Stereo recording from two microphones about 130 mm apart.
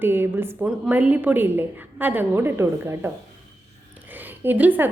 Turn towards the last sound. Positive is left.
turn(degrees=-15)  # may be behind; listen again after turning